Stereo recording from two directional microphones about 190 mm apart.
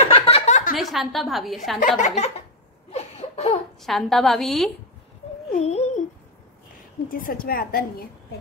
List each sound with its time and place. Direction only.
0.1 s a sound: 35° left (ahead or behind)
0.7 s a woman's voice: centre (ahead or behind)
1.8 s speech: 40° left (ahead or behind)
2.9 s a sound: 35° left (ahead or behind)
3.8 s a woman's voice: centre (ahead or behind)
5.5 s speech: 35° left (ahead or behind)
7.1 s a woman's voice: 50° left (ahead or behind)